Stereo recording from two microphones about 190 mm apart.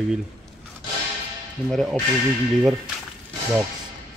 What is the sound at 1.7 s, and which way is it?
Speech, centre (ahead or behind).